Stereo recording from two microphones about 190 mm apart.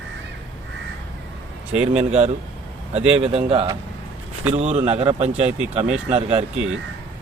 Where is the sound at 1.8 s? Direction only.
35° right (ahead or behind).